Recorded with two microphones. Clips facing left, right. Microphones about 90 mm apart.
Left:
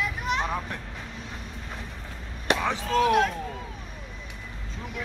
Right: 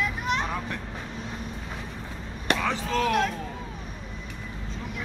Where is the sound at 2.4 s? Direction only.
15° left (ahead or behind).